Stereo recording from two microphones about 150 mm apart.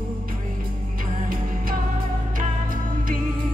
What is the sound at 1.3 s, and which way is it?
Music, 70° right (ahead or behind).